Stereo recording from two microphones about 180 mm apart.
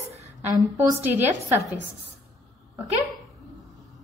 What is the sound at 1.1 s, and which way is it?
Speech, 10° right (ahead or behind).